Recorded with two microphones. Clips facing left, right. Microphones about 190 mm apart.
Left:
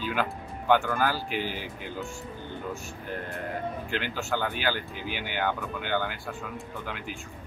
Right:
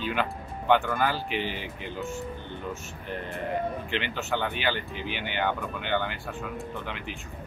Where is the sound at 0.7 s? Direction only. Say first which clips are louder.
Even; centre (ahead or behind).